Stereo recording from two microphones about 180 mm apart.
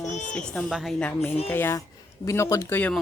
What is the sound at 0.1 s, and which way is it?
Music, 45° left (ahead or behind).